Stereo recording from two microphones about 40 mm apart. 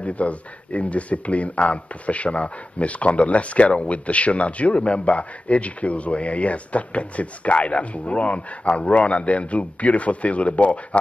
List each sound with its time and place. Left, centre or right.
0.0 s speech: left